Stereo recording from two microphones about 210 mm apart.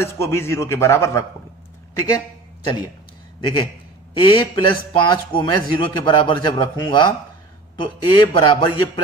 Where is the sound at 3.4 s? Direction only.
25° left (ahead or behind).